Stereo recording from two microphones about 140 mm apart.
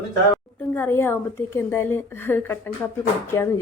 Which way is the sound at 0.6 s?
15° left (ahead or behind).